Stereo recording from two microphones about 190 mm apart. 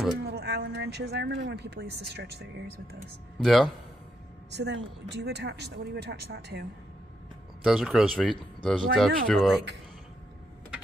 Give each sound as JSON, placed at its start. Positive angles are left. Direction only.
{"t": 0.2, "sound": "speech", "side_deg": -55}
{"t": 3.4, "sound": "speech", "side_deg": 0}
{"t": 4.5, "sound": "speech", "side_deg": -65}
{"t": 7.6, "sound": "speech", "side_deg": 0}